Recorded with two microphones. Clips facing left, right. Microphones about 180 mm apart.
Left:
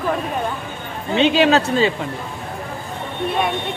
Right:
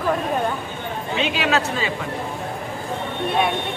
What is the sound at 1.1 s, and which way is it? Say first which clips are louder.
Speech: left 7 dB; 30° left (ahead or behind).